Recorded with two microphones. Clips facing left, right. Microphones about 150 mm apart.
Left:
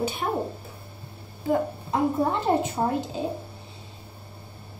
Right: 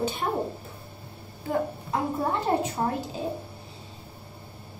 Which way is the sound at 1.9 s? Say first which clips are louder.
Left 7 dB; 20° left (ahead or behind).